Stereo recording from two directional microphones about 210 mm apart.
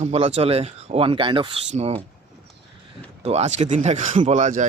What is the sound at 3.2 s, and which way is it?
Speech, 30° right (ahead or behind).